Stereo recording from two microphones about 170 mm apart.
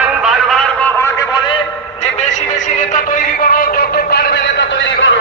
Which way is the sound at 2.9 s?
55° left (ahead or behind).